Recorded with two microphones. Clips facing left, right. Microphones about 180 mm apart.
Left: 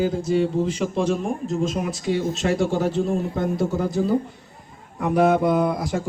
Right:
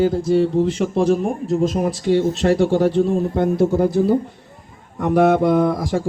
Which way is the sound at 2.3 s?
60° right (ahead or behind).